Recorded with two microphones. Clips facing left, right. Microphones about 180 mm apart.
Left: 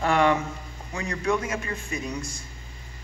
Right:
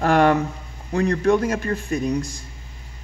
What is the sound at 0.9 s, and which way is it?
Speech, 60° right (ahead or behind).